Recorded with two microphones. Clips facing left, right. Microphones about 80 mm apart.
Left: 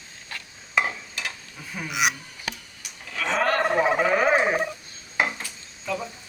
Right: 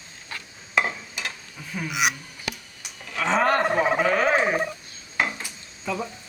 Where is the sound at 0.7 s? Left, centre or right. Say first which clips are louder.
Right 1 dB; centre.